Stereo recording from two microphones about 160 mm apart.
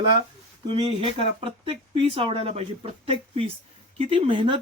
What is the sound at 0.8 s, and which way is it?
Speech, 35° right (ahead or behind).